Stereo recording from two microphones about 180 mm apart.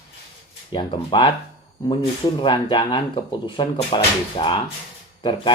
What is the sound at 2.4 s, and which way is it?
Speech, 25° left (ahead or behind).